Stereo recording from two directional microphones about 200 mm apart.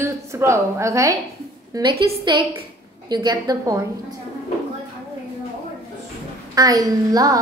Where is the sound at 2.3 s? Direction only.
25° right (ahead or behind).